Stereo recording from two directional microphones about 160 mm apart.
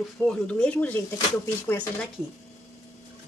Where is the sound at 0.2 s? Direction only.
5° left (ahead or behind).